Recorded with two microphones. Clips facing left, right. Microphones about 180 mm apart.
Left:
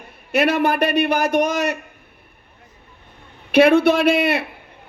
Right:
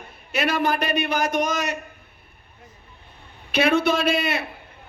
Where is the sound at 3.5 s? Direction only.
60° left (ahead or behind).